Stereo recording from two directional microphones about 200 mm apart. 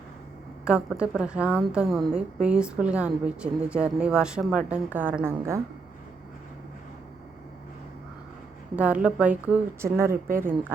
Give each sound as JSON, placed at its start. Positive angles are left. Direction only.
{"t": 0.6, "sound": "a woman's voice", "side_deg": -5}
{"t": 8.7, "sound": "a woman's voice", "side_deg": -5}
{"t": 10.1, "sound": "speech", "side_deg": -45}